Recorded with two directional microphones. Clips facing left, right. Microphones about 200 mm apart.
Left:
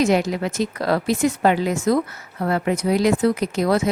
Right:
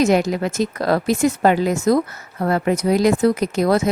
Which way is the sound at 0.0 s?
45° right (ahead or behind).